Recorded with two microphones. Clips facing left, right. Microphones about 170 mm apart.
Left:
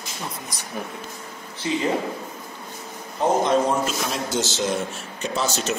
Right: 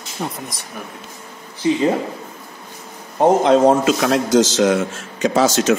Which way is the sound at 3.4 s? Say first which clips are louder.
Right 8 dB; 90° right.